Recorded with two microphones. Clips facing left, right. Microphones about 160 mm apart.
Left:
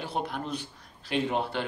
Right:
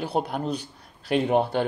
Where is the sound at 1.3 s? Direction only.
55° right (ahead or behind).